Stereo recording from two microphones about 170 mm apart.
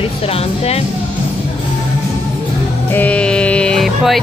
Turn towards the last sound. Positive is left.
turn(degrees=0)  # may be behind; listen again after turning